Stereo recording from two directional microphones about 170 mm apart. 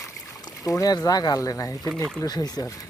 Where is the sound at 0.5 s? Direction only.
20° left (ahead or behind).